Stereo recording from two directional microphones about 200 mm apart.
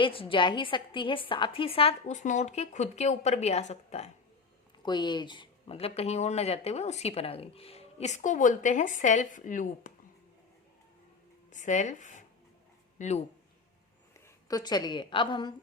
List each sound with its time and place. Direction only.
0.0 s speech: 25° left (ahead or behind)
4.8 s speech: 20° left (ahead or behind); by 9.9 s 40° left (ahead or behind)
11.5 s speech: 35° left (ahead or behind)
14.4 s a woman's voice: 20° left (ahead or behind)